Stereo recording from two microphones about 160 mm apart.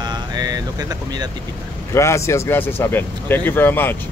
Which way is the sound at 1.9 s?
15° left (ahead or behind).